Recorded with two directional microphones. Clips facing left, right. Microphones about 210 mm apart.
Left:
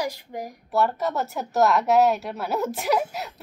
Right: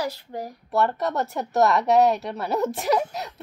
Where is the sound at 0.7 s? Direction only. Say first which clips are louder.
Even; centre (ahead or behind).